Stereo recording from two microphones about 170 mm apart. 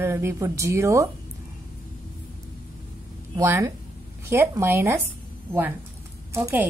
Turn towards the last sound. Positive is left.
turn(degrees=-15)  # may be behind; listen again after turning